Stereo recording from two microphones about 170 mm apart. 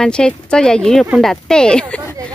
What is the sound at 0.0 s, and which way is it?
Speech, 5° left (ahead or behind).